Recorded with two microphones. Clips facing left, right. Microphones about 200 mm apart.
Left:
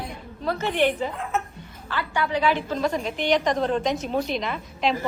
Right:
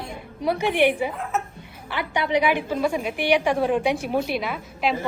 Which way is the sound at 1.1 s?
Centre (ahead or behind).